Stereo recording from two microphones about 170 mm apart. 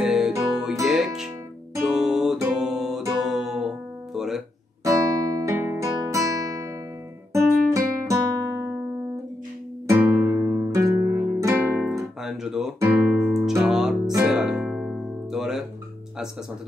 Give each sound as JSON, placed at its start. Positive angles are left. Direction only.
{"t": 0.0, "sound": "music", "side_deg": -5}
{"t": 4.8, "sound": "music", "side_deg": -20}
{"t": 9.8, "sound": "music", "side_deg": -10}
{"t": 11.7, "sound": "guitar", "side_deg": -5}
{"t": 13.7, "sound": "music", "side_deg": -5}